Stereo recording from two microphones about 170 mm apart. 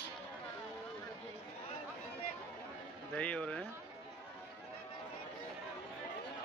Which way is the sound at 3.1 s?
10° left (ahead or behind).